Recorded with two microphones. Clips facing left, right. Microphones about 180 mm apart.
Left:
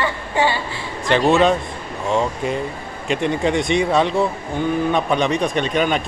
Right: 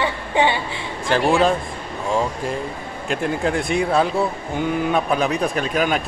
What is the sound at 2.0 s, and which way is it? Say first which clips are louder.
Speech: left 2 dB; 5° right (ahead or behind).